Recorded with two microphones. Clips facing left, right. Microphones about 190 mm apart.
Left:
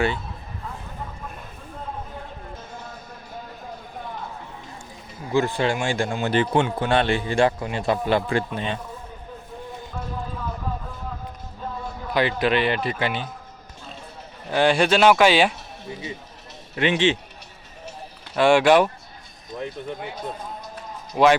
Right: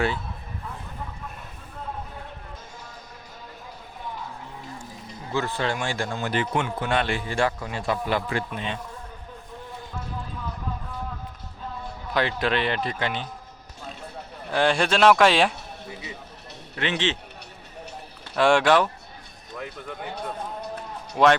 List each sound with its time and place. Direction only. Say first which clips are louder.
5.3 s a man's voice: left 5 dB; 15° left (ahead or behind)
6.3 s a man's voice: left 6 dB; 30° left (ahead or behind)
12.1 s a man's voice: left 3 dB; 5° left (ahead or behind)
14.5 s speech: left 3 dB; 5° left (ahead or behind)
16.7 s a man's voice: left 6 dB; 15° left (ahead or behind)
18.3 s speech: left 2 dB; centre (ahead or behind)
18.6 s a man's voice: left 4 dB; 15° left (ahead or behind)
19.5 s a man's voice: left 5 dB; 25° left (ahead or behind)
21.2 s speech: left 2 dB; 5° left (ahead or behind)